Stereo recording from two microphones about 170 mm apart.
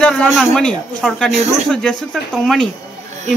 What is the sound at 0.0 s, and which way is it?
Speech, 5° left (ahead or behind).